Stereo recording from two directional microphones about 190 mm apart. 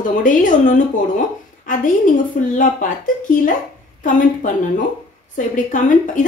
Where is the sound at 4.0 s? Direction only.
40° left (ahead or behind).